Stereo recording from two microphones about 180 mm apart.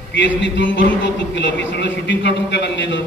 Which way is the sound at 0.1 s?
85° left.